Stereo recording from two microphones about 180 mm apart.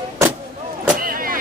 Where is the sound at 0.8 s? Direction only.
50° right (ahead or behind).